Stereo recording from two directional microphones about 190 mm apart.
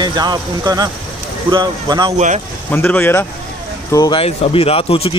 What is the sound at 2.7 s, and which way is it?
Speech, 10° left (ahead or behind).